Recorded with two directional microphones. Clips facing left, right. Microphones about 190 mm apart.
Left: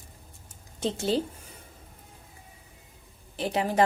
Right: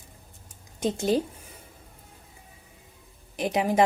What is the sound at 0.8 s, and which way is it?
Speech, 15° right (ahead or behind).